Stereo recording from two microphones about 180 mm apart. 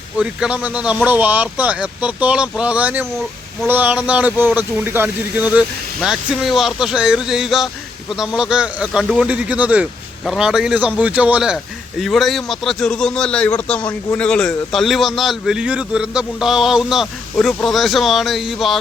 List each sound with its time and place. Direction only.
0.2 s speech: 5° right (ahead or behind)